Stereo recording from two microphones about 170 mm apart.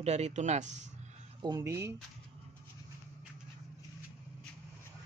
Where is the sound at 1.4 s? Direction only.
20° right (ahead or behind).